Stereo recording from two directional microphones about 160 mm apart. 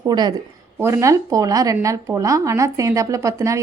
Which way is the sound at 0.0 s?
25° right (ahead or behind).